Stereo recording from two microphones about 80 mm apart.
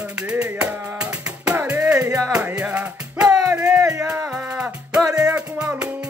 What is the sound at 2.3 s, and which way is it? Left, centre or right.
Music, centre.